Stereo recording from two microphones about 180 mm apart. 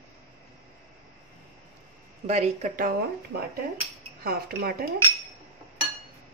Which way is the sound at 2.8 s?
55° right (ahead or behind).